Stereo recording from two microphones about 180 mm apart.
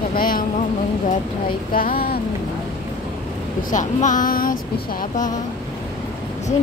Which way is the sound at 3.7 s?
45° left (ahead or behind).